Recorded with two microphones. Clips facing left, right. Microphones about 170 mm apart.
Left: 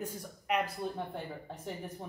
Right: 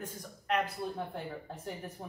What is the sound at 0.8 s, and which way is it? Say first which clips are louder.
Speech: even; centre (ahead or behind).